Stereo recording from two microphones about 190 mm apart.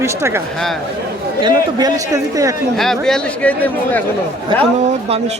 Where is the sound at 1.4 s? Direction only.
20° right (ahead or behind).